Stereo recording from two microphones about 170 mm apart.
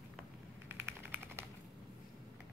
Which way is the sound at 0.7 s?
10° right (ahead or behind).